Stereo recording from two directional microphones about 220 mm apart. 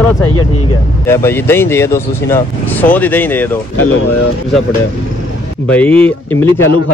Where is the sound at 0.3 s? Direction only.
90° left.